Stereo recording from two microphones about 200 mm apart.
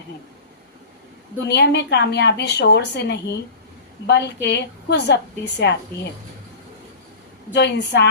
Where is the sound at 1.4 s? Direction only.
60° left (ahead or behind).